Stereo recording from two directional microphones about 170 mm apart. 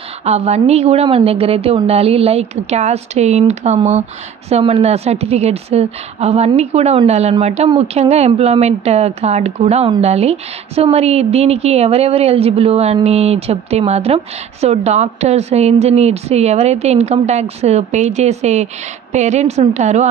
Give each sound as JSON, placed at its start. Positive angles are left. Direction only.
{"t": 0.2, "sound": "a woman's voice", "side_deg": -40}